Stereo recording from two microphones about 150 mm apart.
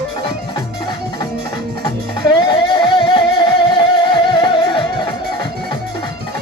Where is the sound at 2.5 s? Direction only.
30° left (ahead or behind).